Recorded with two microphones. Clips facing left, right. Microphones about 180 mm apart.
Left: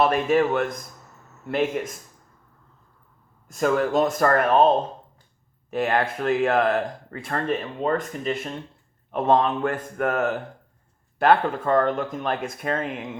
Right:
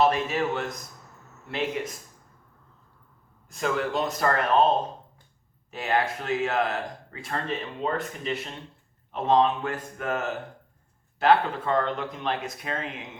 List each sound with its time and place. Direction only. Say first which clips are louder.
0.0 s speech: left 4 dB; 55° left (ahead or behind)
3.5 s speech: left 6 dB; 45° left (ahead or behind)
5.7 s speech: left 4 dB; 55° left (ahead or behind)